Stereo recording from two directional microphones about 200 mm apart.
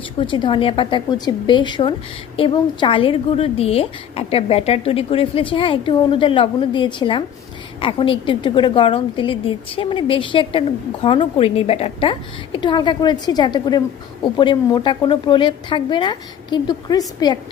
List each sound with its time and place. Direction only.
0.2 s a woman's voice: 25° left (ahead or behind)